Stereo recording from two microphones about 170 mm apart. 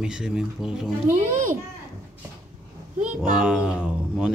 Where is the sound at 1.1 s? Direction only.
50° right (ahead or behind).